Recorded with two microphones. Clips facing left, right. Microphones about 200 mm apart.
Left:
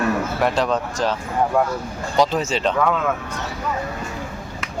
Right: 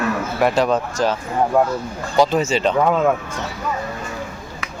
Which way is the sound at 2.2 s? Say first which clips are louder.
Right 3 dB; centre (ahead or behind).